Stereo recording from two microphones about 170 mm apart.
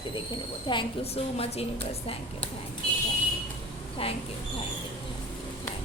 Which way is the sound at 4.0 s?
35° left (ahead or behind).